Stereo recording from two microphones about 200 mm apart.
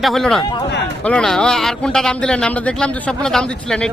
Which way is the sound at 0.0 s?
Centre (ahead or behind).